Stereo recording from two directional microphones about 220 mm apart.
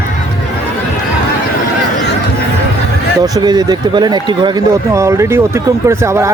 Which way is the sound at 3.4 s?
20° right (ahead or behind).